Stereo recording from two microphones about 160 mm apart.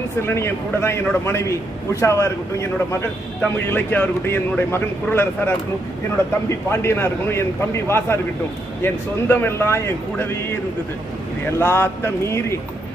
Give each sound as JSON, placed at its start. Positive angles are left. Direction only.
{"t": 0.2, "sound": "a man's voice", "side_deg": 15}
{"t": 6.7, "sound": "a man's voice", "side_deg": 15}
{"t": 11.5, "sound": "a man's voice", "side_deg": 15}